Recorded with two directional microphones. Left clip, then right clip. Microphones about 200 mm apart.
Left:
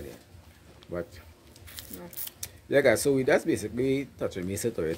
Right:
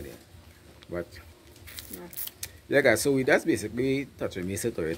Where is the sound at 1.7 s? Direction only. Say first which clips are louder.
Right 1 dB; centre (ahead or behind).